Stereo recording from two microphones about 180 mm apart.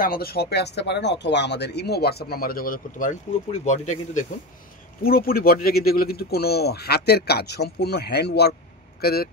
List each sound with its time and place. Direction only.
0.0 s speech: 55° left (ahead or behind)
5.0 s speech: 55° left (ahead or behind)